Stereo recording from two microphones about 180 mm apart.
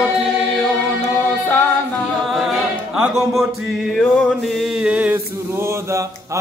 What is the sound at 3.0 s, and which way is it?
Music, 5° right (ahead or behind).